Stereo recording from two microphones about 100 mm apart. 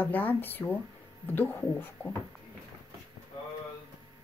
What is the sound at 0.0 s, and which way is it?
Speech, 15° left (ahead or behind).